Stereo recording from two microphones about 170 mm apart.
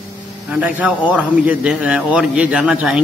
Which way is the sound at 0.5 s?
10° right (ahead or behind).